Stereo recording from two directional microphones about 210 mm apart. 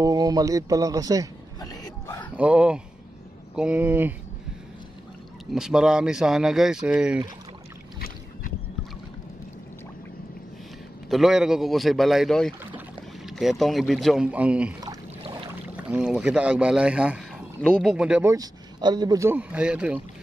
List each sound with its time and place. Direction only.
0.0 s a man's voice: 20° right (ahead or behind)
1.6 s a sound: 20° left (ahead or behind)
2.3 s a man's voice: 5° right (ahead or behind)
5.5 s speech: centre (ahead or behind)
11.1 s speech: centre (ahead or behind)
14.8 s a sound: 20° right (ahead or behind)
15.7 s speech: 5° right (ahead or behind)